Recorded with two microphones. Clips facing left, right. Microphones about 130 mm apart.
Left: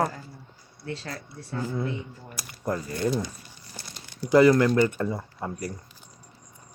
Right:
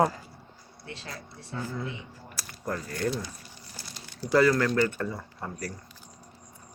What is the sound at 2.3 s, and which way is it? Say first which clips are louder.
Speech: left 4 dB; 15° left (ahead or behind).